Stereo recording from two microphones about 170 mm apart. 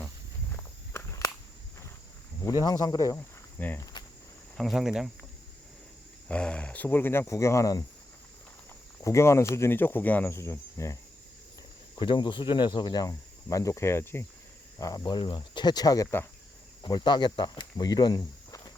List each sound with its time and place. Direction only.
0.5 s walk: 15° left (ahead or behind)
2.4 s speech: 20° left (ahead or behind)
4.5 s speech: centre (ahead or behind)
6.2 s speech: 5° left (ahead or behind)
9.0 s speech: 15° left (ahead or behind)
11.9 s cricket: 30° left (ahead or behind)
16.8 s speech: 25° left (ahead or behind)